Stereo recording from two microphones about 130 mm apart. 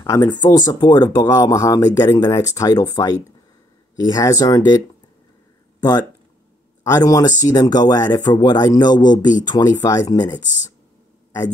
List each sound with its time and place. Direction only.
0.0 s speech: 25° left (ahead or behind)
6.8 s speech: 25° left (ahead or behind)